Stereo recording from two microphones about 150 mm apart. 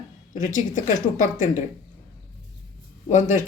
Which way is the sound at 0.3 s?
60° left (ahead or behind).